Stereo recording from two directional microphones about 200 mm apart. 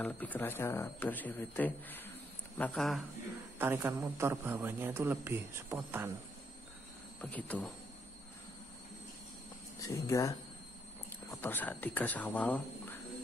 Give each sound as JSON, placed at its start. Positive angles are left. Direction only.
{"t": 0.0, "sound": "speech", "side_deg": 10}
{"t": 3.5, "sound": "a man's voice", "side_deg": -10}
{"t": 7.2, "sound": "speech", "side_deg": 5}
{"t": 9.8, "sound": "speech", "side_deg": 15}